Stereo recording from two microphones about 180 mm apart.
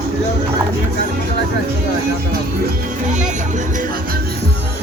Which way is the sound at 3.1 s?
45° right (ahead or behind).